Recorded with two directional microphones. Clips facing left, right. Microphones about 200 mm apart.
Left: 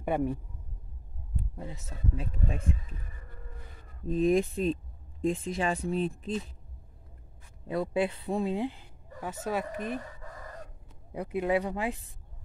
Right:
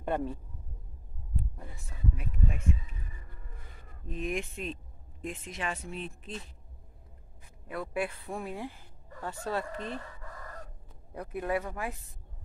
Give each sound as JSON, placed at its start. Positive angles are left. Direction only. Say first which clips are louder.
{"t": 0.0, "sound": "speech", "louder": "left 3 dB", "side_deg": 10}
{"t": 1.6, "sound": "speech", "louder": "left 2 dB", "side_deg": 20}
{"t": 4.0, "sound": "speech", "louder": "left 10 dB", "side_deg": 35}
{"t": 7.6, "sound": "speech", "louder": "left 5 dB", "side_deg": 25}
{"t": 11.1, "sound": "speech", "louder": "left 4 dB", "side_deg": 15}